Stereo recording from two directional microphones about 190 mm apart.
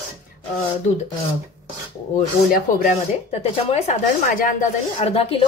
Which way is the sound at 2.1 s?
45° left (ahead or behind).